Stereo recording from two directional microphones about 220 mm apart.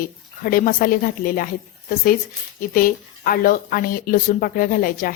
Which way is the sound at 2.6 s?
40° left (ahead or behind).